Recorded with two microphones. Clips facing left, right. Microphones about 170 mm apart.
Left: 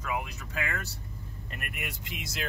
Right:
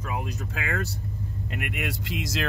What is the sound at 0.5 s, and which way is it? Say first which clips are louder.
Speech: right 2 dB; 60° right (ahead or behind).